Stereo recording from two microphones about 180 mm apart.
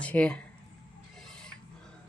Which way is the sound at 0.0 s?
5° left (ahead or behind).